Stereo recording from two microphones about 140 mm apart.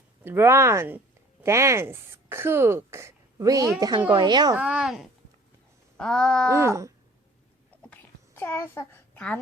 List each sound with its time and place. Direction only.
0.3 s speech: 15° right (ahead or behind)
4.5 s wail: 5° right (ahead or behind)
6.5 s speech: 20° right (ahead or behind)
8.4 s a child's voice: 20° left (ahead or behind)